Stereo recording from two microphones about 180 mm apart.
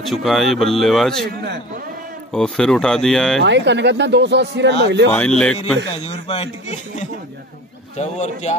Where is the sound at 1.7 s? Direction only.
50° right (ahead or behind).